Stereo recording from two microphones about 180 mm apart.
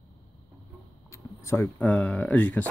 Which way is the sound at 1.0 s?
15° left (ahead or behind).